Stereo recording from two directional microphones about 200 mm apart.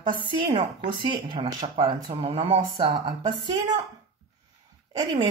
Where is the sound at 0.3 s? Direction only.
25° right (ahead or behind).